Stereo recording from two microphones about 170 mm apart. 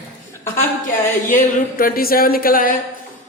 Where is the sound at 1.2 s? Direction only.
55° left (ahead or behind).